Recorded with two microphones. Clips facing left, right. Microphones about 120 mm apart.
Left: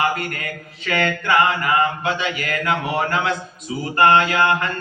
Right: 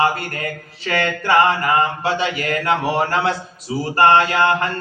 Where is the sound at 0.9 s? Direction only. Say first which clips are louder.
Right 1 dB; 30° right (ahead or behind).